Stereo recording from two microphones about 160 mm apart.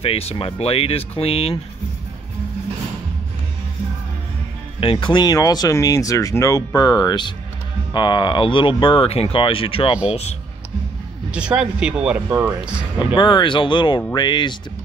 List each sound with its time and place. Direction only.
0.0 s speech: 40° left (ahead or behind)
4.7 s speech: 35° left (ahead or behind)
11.3 s speech: 5° right (ahead or behind)
13.1 s speech: 30° left (ahead or behind)